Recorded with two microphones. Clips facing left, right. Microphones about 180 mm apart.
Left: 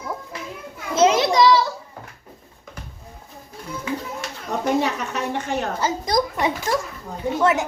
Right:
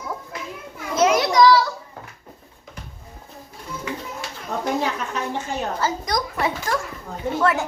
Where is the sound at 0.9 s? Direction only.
25° left (ahead or behind).